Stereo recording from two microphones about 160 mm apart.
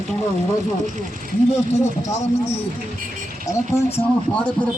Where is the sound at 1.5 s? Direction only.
45° left (ahead or behind).